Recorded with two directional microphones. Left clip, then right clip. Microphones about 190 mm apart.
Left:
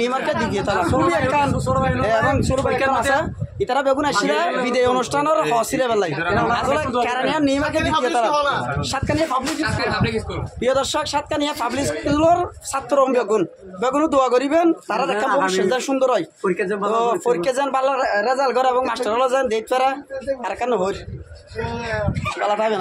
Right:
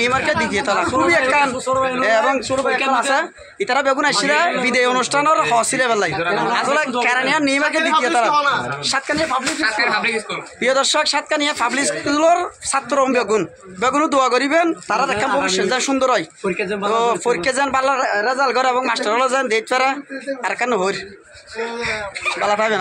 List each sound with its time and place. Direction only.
0.0 s speech: 5° right (ahead or behind)
8.3 s a man's voice: 15° left (ahead or behind)
8.8 s speech: 5° right (ahead or behind)
9.6 s speech: 25° left (ahead or behind)
10.6 s speech: 10° right (ahead or behind)
22.4 s speech: 10° right (ahead or behind)